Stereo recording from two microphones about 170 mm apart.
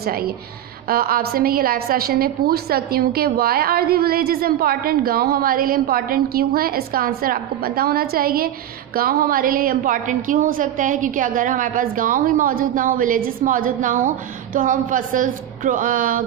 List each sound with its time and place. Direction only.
0.0 s a woman's voice: 60° right (ahead or behind)